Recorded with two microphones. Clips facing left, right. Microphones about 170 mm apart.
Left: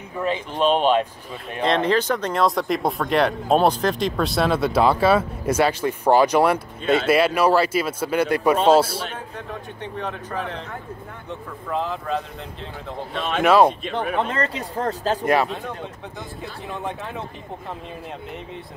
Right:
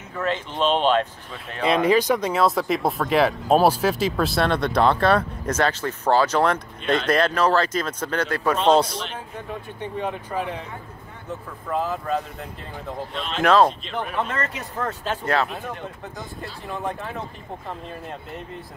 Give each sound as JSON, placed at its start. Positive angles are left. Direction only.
{"t": 0.2, "sound": "speech", "side_deg": 15}
{"t": 1.6, "sound": "speech", "side_deg": -10}
{"t": 9.8, "sound": "speech", "side_deg": -10}
{"t": 13.1, "sound": "speech", "side_deg": 60}
{"t": 13.4, "sound": "speech", "side_deg": 10}
{"t": 14.1, "sound": "speech", "side_deg": 30}
{"t": 16.6, "sound": "speech", "side_deg": 0}